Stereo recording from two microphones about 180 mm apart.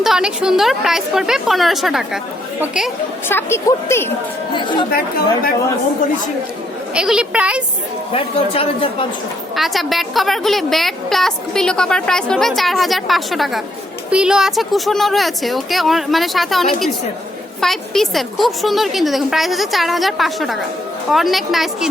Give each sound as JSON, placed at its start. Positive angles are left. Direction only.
{"t": 0.0, "sound": "a woman's voice", "side_deg": -5}
{"t": 3.2, "sound": "a woman's voice", "side_deg": 15}
{"t": 4.5, "sound": "speech", "side_deg": 25}
{"t": 6.9, "sound": "a woman's voice", "side_deg": -5}
{"t": 8.1, "sound": "speech", "side_deg": 30}
{"t": 9.6, "sound": "a woman's voice", "side_deg": 0}